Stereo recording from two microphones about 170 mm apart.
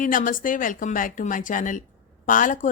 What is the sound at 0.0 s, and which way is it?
A woman's voice, 50° left (ahead or behind).